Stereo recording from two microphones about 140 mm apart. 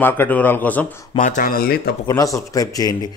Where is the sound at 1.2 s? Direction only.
70° left (ahead or behind); by 1.9 s 90° left.